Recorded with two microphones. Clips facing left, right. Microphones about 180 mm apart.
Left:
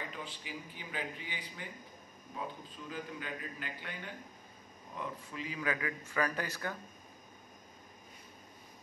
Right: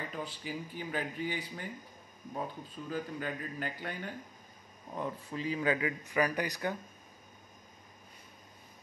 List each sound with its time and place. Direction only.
0.4 s a man's voice: 40° right (ahead or behind); by 6.8 s 15° right (ahead or behind)